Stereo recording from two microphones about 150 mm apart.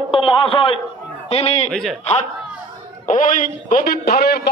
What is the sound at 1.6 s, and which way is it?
Speech, centre (ahead or behind).